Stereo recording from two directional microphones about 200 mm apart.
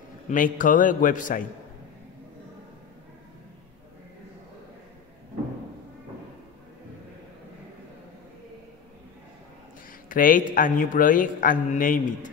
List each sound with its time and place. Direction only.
0.3 s a man's voice: 40° left (ahead or behind)
10.0 s speech: 45° left (ahead or behind)